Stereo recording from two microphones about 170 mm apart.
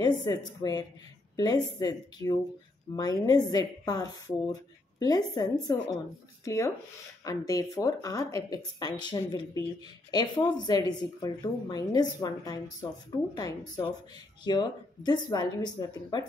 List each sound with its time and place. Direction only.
0.0 s a woman's voice: 25° left (ahead or behind)